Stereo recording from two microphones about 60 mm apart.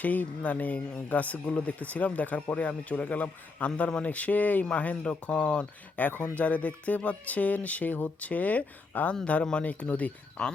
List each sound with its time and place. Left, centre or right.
0.0 s speech: left